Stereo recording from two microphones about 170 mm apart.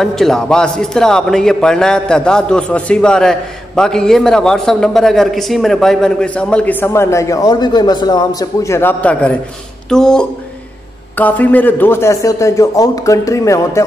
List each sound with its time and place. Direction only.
0.0 s a man's voice: centre (ahead or behind); by 13.8 s 20° left (ahead or behind)